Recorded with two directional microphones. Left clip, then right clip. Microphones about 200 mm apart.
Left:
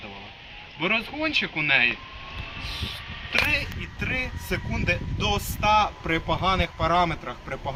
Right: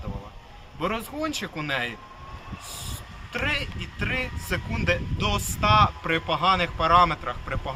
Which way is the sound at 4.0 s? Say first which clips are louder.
Even; centre (ahead or behind).